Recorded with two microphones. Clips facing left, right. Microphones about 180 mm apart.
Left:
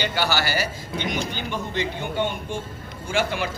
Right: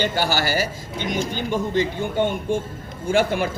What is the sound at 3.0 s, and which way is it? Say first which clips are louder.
Speech: right 5 dB; 50° right (ahead or behind).